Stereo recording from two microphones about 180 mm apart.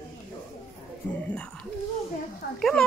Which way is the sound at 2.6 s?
Centre (ahead or behind).